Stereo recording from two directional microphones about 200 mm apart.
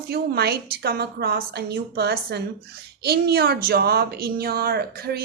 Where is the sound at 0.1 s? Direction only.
50° right (ahead or behind).